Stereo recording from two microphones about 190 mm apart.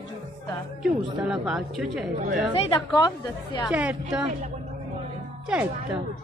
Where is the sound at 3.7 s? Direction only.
10° right (ahead or behind).